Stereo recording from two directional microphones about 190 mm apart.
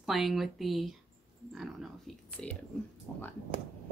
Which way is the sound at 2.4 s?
5° left (ahead or behind).